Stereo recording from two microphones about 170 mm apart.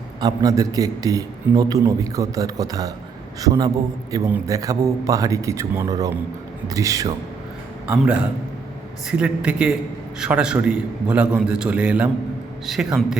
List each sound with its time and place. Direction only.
0.2 s a man's voice: 20° right (ahead or behind)
7.9 s a man's voice: 5° right (ahead or behind)